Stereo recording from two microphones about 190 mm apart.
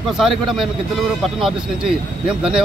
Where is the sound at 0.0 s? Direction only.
Centre (ahead or behind).